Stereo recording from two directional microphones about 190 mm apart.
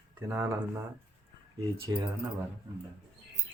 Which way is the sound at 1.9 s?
20° right (ahead or behind).